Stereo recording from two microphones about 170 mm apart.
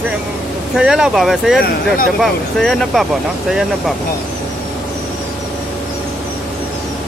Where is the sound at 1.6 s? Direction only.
55° left (ahead or behind).